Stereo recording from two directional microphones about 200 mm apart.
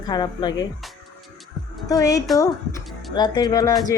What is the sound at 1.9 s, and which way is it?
Speech, 15° left (ahead or behind).